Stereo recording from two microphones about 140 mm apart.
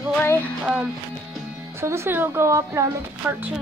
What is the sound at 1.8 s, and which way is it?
Speech, 20° right (ahead or behind).